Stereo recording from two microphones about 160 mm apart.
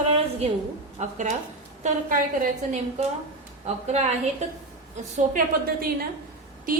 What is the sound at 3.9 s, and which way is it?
Speech, 45° right (ahead or behind).